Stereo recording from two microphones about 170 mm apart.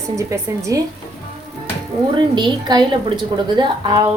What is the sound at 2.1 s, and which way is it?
Speech, 25° right (ahead or behind).